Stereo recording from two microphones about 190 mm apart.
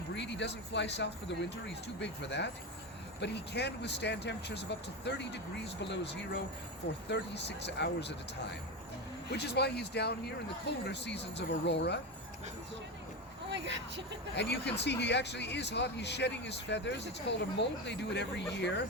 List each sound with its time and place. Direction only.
0.1 s speech: 65° left (ahead or behind)
13.5 s speech: 70° right (ahead or behind)
14.3 s speech: 65° left (ahead or behind)